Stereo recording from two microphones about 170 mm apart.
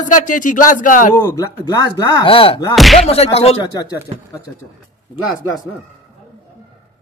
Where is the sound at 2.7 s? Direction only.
Centre (ahead or behind).